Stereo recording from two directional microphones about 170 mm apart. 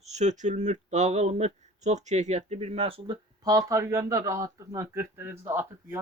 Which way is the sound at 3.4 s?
20° right (ahead or behind).